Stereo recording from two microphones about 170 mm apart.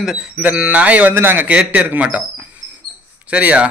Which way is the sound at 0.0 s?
5° right (ahead or behind).